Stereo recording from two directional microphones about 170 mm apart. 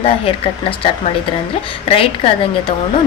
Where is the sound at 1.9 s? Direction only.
35° left (ahead or behind).